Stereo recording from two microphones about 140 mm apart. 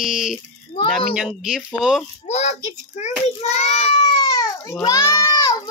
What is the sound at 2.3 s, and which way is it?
A child's voice, 50° left (ahead or behind).